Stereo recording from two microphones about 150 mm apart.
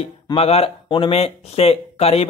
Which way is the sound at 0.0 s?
40° left (ahead or behind).